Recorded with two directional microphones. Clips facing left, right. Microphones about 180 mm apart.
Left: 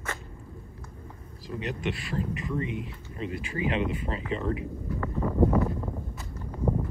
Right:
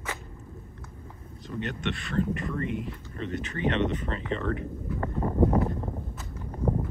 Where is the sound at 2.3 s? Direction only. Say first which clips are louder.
Even; centre (ahead or behind).